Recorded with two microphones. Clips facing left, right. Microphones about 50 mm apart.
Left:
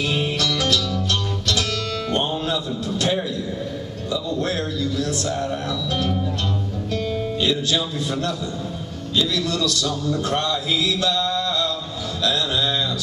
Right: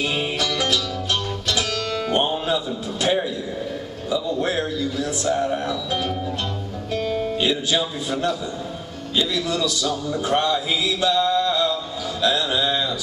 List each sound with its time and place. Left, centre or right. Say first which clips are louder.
0.0 s music: left 1 dB; centre
2.0 s music: right 2 dB; centre
4.1 s a man's voice: right 2 dB; centre
6.9 s music: right 2 dB; centre
7.3 s a man's voice: left 2 dB; centre